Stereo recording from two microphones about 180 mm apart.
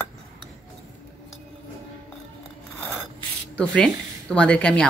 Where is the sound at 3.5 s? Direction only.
5° left (ahead or behind).